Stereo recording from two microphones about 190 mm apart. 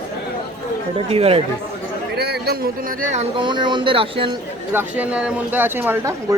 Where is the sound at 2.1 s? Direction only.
60° right (ahead or behind).